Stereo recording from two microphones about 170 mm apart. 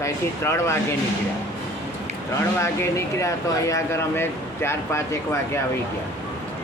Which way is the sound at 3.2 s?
20° left (ahead or behind).